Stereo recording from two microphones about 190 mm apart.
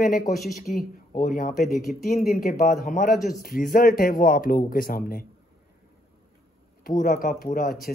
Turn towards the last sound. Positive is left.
turn(degrees=50)  # may be behind; listen again after turning